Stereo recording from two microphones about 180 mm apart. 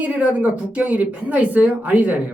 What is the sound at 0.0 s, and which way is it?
Speech, 10° right (ahead or behind).